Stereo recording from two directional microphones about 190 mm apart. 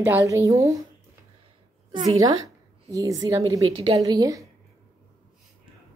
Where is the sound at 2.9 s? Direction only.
20° right (ahead or behind).